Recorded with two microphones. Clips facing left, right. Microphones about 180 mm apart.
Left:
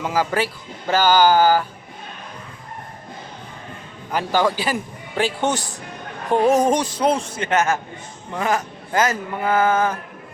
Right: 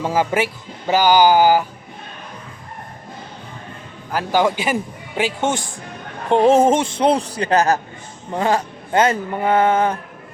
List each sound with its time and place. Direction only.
0.0 s speech: 20° right (ahead or behind)
4.1 s speech: 10° right (ahead or behind); by 10.0 s 30° right (ahead or behind)